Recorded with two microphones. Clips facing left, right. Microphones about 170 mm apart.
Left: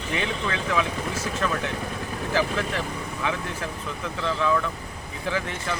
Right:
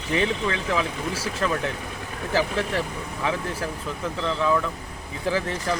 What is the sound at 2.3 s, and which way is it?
Speech, 30° right (ahead or behind).